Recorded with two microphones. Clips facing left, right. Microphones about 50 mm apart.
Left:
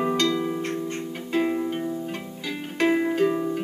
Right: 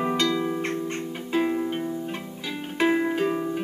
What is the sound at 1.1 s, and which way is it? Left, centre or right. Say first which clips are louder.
Harp: even; centre.